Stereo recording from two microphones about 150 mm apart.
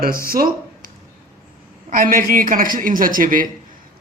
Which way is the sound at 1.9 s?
65° right (ahead or behind).